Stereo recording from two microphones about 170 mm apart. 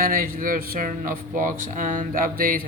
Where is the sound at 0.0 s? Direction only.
55° right (ahead or behind).